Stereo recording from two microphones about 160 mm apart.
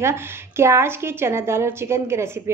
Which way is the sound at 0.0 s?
15° right (ahead or behind).